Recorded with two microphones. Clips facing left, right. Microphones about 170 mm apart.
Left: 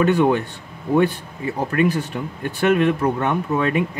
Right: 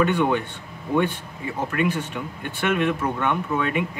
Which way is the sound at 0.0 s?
40° left (ahead or behind).